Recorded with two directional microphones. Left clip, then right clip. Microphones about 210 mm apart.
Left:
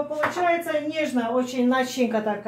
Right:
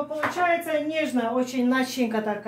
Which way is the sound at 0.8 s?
5° left (ahead or behind).